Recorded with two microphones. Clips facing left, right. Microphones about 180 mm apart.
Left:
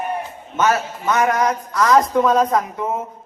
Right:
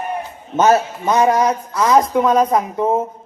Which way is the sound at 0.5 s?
35° right (ahead or behind).